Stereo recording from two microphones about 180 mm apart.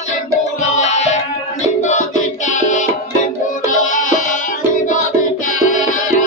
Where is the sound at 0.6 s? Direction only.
40° left (ahead or behind).